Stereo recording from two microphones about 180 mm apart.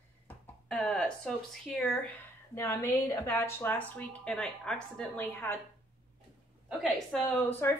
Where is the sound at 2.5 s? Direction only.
15° left (ahead or behind).